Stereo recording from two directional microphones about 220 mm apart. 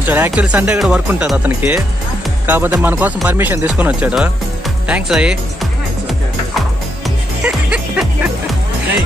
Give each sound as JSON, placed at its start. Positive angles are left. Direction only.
{"t": 0.0, "sound": "speech", "side_deg": -10}
{"t": 4.8, "sound": "music", "side_deg": -5}